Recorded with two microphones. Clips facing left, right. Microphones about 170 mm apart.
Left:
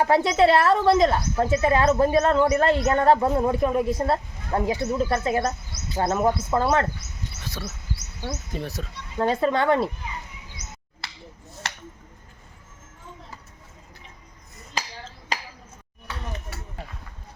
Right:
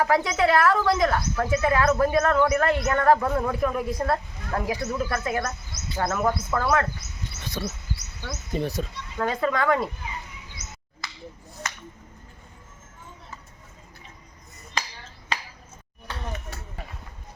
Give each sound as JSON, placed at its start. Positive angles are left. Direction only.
{"t": 0.0, "sound": "speech", "side_deg": 30}
{"t": 8.5, "sound": "speech", "side_deg": 0}
{"t": 9.1, "sound": "speech", "side_deg": 30}